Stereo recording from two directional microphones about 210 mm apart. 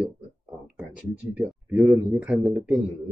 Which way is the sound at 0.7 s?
5° right (ahead or behind).